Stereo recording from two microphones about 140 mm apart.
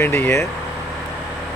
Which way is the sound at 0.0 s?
15° left (ahead or behind).